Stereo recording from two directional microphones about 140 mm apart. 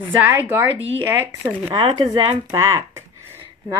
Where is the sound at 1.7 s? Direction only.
40° right (ahead or behind).